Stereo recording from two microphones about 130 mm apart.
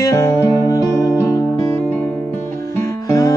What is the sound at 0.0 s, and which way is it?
Music, 20° left (ahead or behind).